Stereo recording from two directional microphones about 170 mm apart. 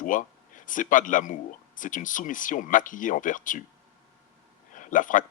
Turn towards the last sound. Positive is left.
turn(degrees=50)  # may be behind; listen again after turning